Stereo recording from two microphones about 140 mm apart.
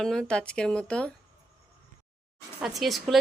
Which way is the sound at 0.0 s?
5° left (ahead or behind).